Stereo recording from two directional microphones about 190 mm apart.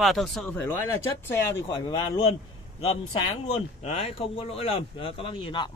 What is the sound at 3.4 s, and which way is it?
Speech, 30° left (ahead or behind).